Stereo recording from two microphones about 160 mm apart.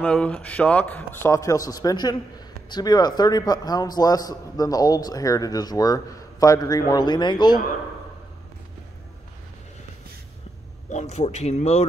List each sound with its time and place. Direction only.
0.0 s a man's voice: 5° left (ahead or behind); by 7.6 s 25° left (ahead or behind)
10.9 s speech: 45° left (ahead or behind)